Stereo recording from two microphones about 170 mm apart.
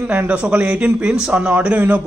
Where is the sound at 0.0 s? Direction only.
10° right (ahead or behind).